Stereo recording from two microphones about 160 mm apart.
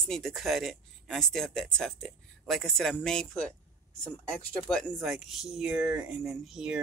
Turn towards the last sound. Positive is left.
turn(degrees=-5)  # may be behind; listen again after turning